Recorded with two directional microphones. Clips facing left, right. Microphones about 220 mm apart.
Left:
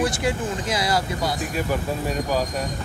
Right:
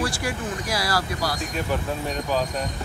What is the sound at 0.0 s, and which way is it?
Speech, 20° left (ahead or behind).